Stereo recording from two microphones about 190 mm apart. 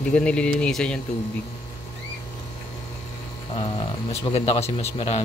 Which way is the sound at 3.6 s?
30° left (ahead or behind).